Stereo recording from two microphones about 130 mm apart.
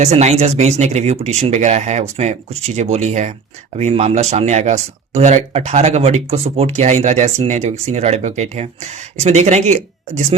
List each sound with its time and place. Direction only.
0.0 s speech: 60° right (ahead or behind)